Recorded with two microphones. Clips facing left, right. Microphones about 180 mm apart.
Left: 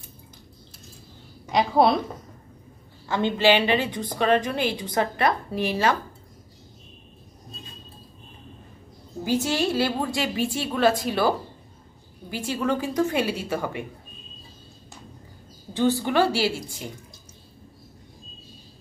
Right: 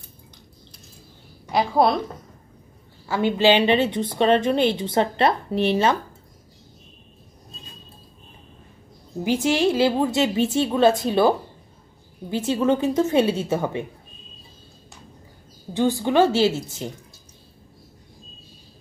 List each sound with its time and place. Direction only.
1.4 s a woman's voice: centre (ahead or behind)
3.1 s a woman's voice: 10° right (ahead or behind)
9.2 s a woman's voice: 20° right (ahead or behind)
15.7 s a woman's voice: 15° right (ahead or behind)